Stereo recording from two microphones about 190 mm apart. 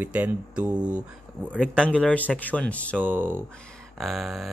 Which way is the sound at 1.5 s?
5° left (ahead or behind).